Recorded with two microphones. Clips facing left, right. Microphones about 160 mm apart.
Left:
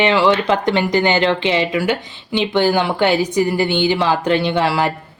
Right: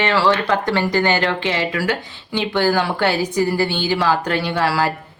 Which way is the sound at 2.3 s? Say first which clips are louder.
Left 2 dB; 20° left (ahead or behind).